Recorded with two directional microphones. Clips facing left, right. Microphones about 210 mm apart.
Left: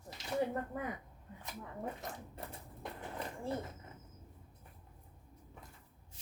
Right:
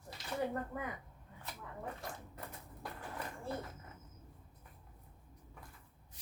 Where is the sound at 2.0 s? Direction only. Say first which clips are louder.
Left 2 dB; 25° left (ahead or behind).